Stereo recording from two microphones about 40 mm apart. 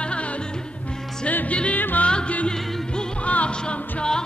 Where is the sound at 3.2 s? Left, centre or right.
Left.